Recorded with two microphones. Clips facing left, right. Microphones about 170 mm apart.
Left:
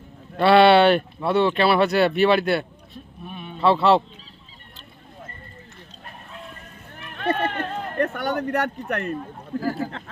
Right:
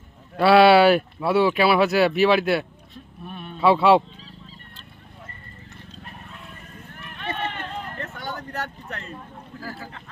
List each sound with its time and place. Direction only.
0.3 s speech: 5° right (ahead or behind)
3.2 s a sound: 10° left (ahead or behind)
3.6 s speech: 5° right (ahead or behind)
7.2 s run: 40° left (ahead or behind)
7.9 s speech: 65° left (ahead or behind)